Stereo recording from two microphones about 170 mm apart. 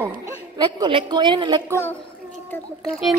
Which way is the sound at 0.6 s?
25° right (ahead or behind).